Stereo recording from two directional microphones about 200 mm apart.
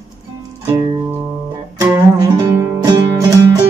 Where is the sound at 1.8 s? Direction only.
15° right (ahead or behind).